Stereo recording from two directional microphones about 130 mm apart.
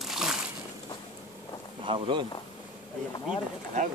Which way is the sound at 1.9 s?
40° right (ahead or behind).